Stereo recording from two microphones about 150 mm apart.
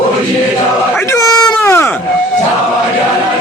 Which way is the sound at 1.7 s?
20° left (ahead or behind).